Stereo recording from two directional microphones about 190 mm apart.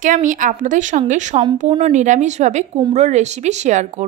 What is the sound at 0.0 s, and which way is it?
A woman's voice, 40° right (ahead or behind).